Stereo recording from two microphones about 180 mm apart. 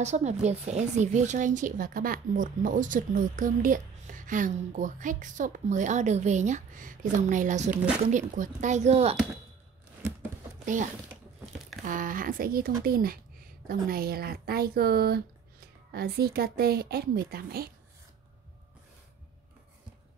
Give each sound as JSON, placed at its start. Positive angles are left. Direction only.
{"t": 0.0, "sound": "speech", "side_deg": -40}
{"t": 10.6, "sound": "speech", "side_deg": -45}